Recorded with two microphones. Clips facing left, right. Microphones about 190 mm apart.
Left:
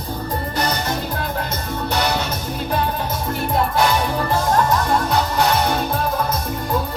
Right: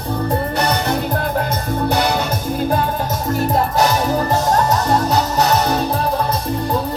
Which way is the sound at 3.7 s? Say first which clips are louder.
Right 2 dB; 40° right (ahead or behind).